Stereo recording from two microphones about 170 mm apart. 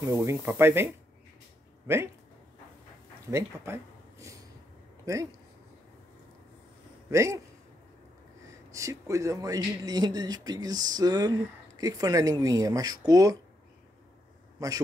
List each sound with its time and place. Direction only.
0.0 s speech: 15° right (ahead or behind)
3.3 s speech: 15° right (ahead or behind)
7.1 s a man's voice: 15° right (ahead or behind)
8.5 s a man's voice: 20° right (ahead or behind)
14.6 s a man's voice: 20° right (ahead or behind)